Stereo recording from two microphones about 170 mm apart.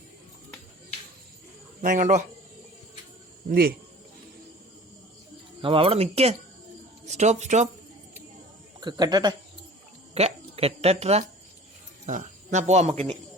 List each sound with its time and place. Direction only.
1.8 s speech: 50° right (ahead or behind)
3.5 s speech: 65° right (ahead or behind)
5.6 s speech: 30° right (ahead or behind)
8.8 s speech: 25° right (ahead or behind)
10.2 s speech: 35° right (ahead or behind)